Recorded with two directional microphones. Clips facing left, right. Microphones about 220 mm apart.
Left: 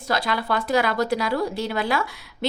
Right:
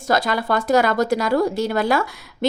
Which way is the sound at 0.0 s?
45° right (ahead or behind).